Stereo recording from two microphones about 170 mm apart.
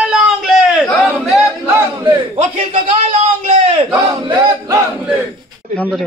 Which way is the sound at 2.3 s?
40° right (ahead or behind).